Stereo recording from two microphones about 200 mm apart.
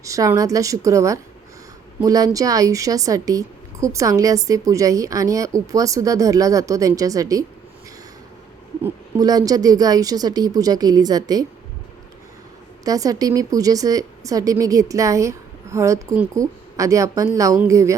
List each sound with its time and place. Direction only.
0.0 s a woman's voice: 15° right (ahead or behind)
8.8 s speech: 20° right (ahead or behind)
12.8 s a woman's voice: 20° right (ahead or behind)